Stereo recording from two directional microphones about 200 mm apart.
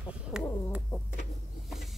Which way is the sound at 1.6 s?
Centre (ahead or behind).